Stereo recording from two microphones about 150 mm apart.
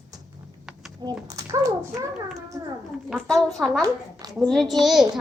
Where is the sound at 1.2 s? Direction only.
20° right (ahead or behind).